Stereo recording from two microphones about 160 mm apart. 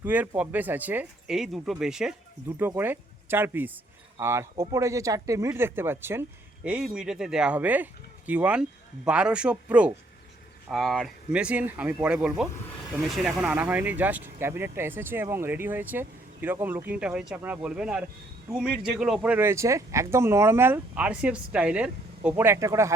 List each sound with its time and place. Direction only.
0.0 s speech: 10° right (ahead or behind)